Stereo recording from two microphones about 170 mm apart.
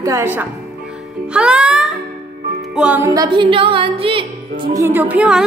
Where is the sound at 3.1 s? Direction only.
25° right (ahead or behind).